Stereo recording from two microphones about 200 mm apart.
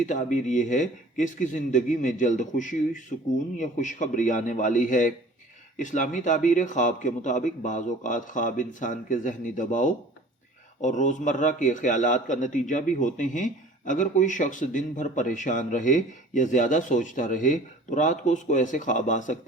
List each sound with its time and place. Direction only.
0.0 s a man's voice: 40° left (ahead or behind)